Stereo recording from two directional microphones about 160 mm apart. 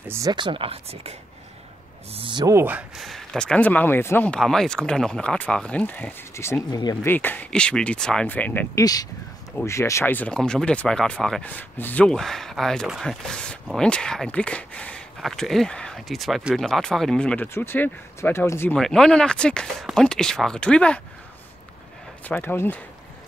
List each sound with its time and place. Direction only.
0.1 s speech: 25° right (ahead or behind); by 1.1 s 40° right (ahead or behind)
2.1 s speech: 30° right (ahead or behind)
2.6 s speech: 10° right (ahead or behind)
3.1 s speech: 5° left (ahead or behind); by 7.1 s 25° left (ahead or behind)
7.1 s speech: 10° left (ahead or behind)
18.8 s speech: 5° left (ahead or behind)
22.2 s speech: 10° left (ahead or behind)